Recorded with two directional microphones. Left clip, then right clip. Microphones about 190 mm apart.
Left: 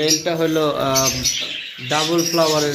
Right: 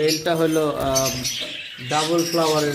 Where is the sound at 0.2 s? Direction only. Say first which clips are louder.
Even; 20° right (ahead or behind).